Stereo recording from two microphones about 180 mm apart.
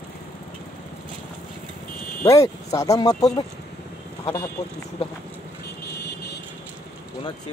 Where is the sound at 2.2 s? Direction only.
20° left (ahead or behind).